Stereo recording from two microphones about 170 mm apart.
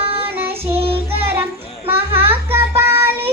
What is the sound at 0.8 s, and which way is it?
Child singing, 35° right (ahead or behind).